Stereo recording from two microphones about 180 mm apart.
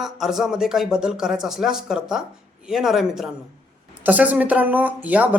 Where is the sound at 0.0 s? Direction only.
Centre (ahead or behind).